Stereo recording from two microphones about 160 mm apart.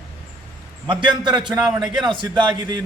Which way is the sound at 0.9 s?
30° right (ahead or behind).